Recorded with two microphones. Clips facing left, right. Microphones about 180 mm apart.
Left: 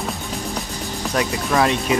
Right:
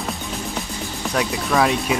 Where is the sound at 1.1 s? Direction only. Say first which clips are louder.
Even; centre (ahead or behind).